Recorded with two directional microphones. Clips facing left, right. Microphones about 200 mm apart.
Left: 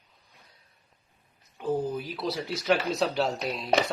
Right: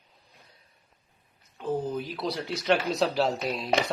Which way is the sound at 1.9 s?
Centre (ahead or behind).